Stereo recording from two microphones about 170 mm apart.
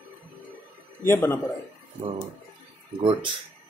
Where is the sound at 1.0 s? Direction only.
15° left (ahead or behind).